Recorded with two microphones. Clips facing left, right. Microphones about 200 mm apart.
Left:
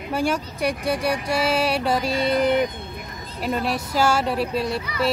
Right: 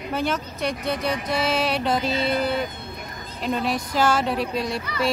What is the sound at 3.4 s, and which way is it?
Speech, 5° left (ahead or behind).